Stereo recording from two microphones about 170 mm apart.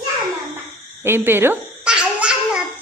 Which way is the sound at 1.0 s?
15° right (ahead or behind).